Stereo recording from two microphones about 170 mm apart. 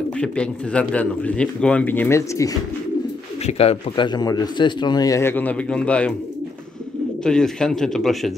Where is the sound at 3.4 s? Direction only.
40° left (ahead or behind); by 6.1 s 5° left (ahead or behind).